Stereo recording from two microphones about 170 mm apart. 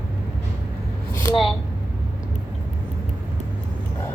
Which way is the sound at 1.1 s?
20° left (ahead or behind).